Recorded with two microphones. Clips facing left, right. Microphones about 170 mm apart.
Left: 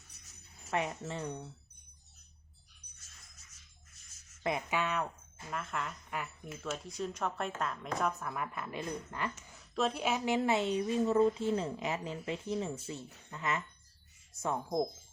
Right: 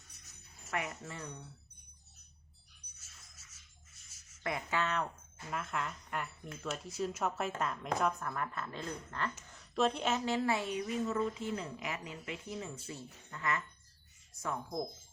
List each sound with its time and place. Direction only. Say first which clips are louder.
0.7 s a woman's voice: left 5 dB; 25° left (ahead or behind)
4.4 s speech: left 2 dB; 15° left (ahead or behind)
5.5 s speech: even; centre (ahead or behind)
9.5 s a woman's voice: right 2 dB; centre (ahead or behind); by 14.8 s 25° left (ahead or behind)